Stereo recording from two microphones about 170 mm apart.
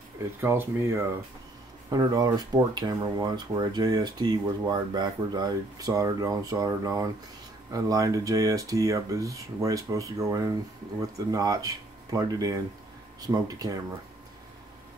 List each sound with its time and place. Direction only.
0.2 s speech: 15° right (ahead or behind)